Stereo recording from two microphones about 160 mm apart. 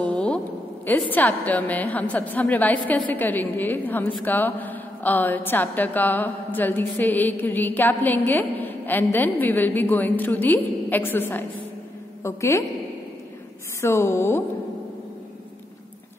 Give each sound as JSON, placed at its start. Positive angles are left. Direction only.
{"t": 0.0, "sound": "a sound", "side_deg": 5}
{"t": 0.8, "sound": "a woman's voice", "side_deg": 10}
{"t": 13.7, "sound": "a woman's voice", "side_deg": 15}